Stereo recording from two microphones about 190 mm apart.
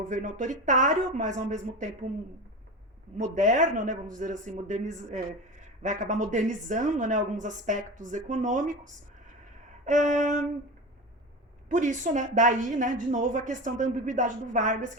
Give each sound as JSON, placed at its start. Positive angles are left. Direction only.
{"t": 0.0, "sound": "speech", "side_deg": -40}
{"t": 3.2, "sound": "speech", "side_deg": -40}
{"t": 11.7, "sound": "speech", "side_deg": -40}